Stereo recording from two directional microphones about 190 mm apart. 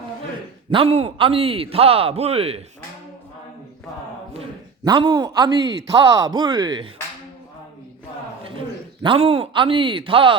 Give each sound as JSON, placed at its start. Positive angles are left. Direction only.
{"t": 0.7, "sound": "a man's voice", "side_deg": -30}
{"t": 4.9, "sound": "speech", "side_deg": -20}
{"t": 8.4, "sound": "a man's voice", "side_deg": -25}